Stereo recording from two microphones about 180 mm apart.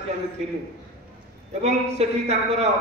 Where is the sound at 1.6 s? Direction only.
35° right (ahead or behind).